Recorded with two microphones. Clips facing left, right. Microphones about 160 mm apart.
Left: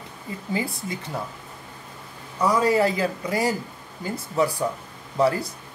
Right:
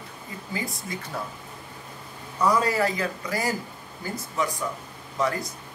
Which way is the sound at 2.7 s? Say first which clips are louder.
Left 5 dB; 25° left (ahead or behind).